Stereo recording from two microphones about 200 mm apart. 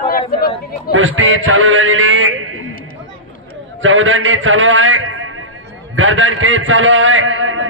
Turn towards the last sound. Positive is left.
turn(degrees=-80)